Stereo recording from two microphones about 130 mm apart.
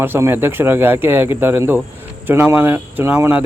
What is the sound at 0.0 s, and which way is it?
Speech, 15° right (ahead or behind).